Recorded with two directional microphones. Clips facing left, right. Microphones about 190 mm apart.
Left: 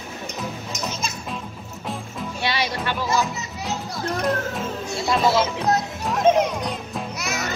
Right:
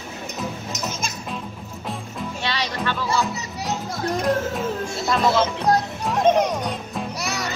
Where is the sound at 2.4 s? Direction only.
15° left (ahead or behind).